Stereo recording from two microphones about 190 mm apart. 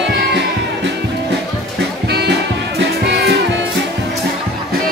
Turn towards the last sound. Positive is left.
turn(degrees=-65)  # may be behind; listen again after turning